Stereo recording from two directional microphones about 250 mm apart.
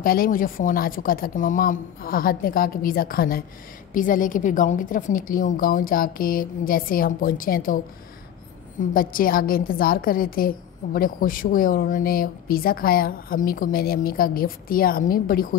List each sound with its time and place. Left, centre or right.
0.0 s a woman's voice: left
8.9 s a woman's voice: left